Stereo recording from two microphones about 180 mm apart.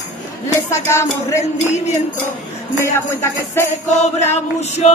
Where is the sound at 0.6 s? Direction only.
15° left (ahead or behind).